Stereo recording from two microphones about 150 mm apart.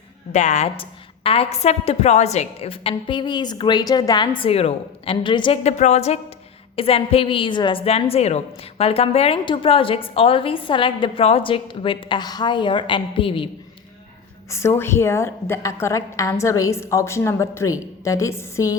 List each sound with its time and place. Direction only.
0.3 s a woman's voice: 50° left (ahead or behind); by 5.5 s 35° left (ahead or behind)
5.6 s a woman's voice: 50° left (ahead or behind)
14.5 s a woman's voice: 15° left (ahead or behind)